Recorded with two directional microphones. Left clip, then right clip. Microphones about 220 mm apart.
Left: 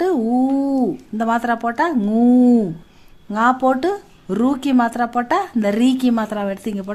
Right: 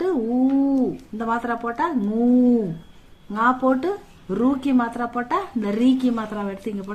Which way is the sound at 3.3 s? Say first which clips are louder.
Left 4 dB; 50° left (ahead or behind).